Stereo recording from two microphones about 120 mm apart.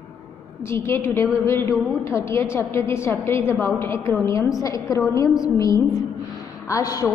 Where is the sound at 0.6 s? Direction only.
20° left (ahead or behind).